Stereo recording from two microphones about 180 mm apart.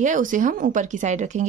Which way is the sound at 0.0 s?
45° right (ahead or behind).